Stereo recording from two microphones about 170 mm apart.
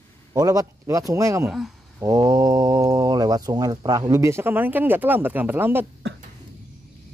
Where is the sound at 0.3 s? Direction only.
20° right (ahead or behind).